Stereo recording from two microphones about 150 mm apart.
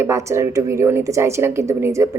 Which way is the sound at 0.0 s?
20° right (ahead or behind).